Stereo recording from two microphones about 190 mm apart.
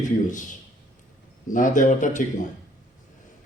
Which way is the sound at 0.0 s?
40° left (ahead or behind).